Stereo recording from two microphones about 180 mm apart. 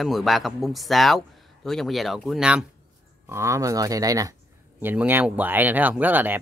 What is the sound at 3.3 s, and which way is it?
Speech, 15° right (ahead or behind).